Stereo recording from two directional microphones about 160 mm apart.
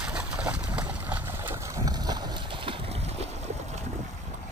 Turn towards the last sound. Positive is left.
turn(degrees=-40)  # may be behind; listen again after turning